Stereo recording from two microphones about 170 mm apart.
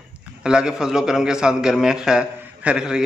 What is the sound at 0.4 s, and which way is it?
A man's voice, 5° right (ahead or behind).